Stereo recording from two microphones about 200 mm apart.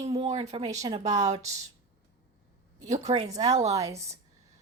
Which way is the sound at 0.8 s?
20° right (ahead or behind).